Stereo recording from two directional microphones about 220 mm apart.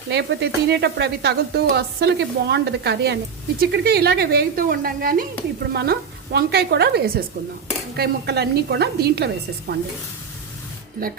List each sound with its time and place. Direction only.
0.1 s speech: 50° right (ahead or behind)